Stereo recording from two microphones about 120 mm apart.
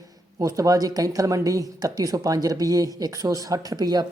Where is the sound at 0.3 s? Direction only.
30° right (ahead or behind).